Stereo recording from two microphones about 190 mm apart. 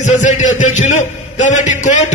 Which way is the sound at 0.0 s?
40° left (ahead or behind).